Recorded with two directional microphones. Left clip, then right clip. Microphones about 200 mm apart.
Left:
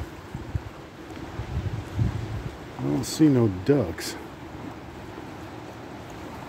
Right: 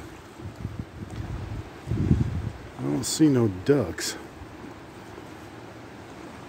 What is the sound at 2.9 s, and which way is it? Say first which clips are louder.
Speech: left 1 dB; 20° right (ahead or behind).